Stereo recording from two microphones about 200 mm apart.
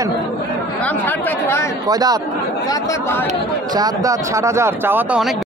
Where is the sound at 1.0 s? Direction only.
10° left (ahead or behind).